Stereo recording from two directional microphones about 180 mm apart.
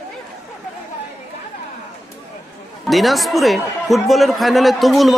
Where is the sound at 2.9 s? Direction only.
Centre (ahead or behind).